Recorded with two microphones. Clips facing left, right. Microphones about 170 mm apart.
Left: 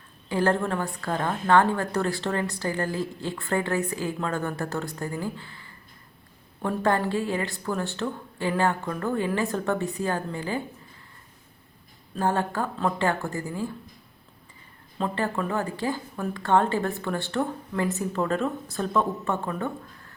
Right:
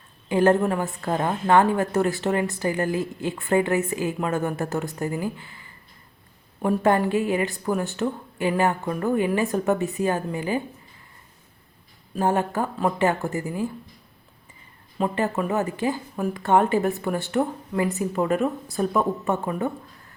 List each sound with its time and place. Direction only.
0.3 s speech: 20° right (ahead or behind)
12.2 s speech: 15° right (ahead or behind)
14.9 s speech: 15° right (ahead or behind)